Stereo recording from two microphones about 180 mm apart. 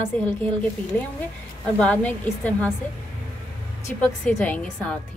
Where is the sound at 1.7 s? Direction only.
5° left (ahead or behind).